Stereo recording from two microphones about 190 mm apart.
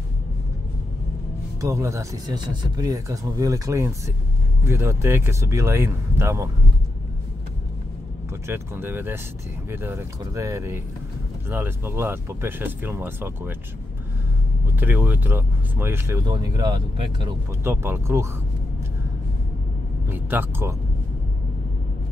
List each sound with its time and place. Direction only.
1.6 s speech: 15° right (ahead or behind)
8.5 s speech: 10° right (ahead or behind)
14.8 s speech: 10° right (ahead or behind)
17.6 s speech: 10° right (ahead or behind)
20.1 s speech: 10° right (ahead or behind)